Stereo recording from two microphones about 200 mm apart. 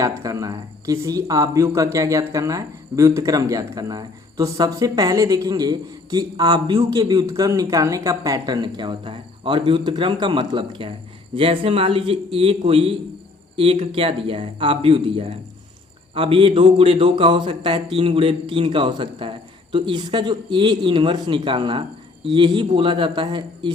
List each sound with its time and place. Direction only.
0.0 s a man's voice: 15° right (ahead or behind)